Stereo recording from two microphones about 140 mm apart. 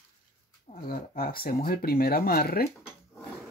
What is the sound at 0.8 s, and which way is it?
Speech, 90° left.